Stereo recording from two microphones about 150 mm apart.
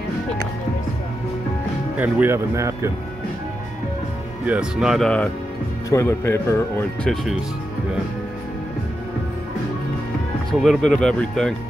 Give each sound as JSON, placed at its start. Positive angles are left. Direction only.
{"t": 2.0, "sound": "speech", "side_deg": -15}
{"t": 4.5, "sound": "speech", "side_deg": -5}
{"t": 5.9, "sound": "speech", "side_deg": 20}
{"t": 10.6, "sound": "speech", "side_deg": 0}